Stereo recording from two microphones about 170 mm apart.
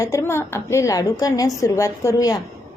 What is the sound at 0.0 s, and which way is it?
A woman's voice, 15° left (ahead or behind).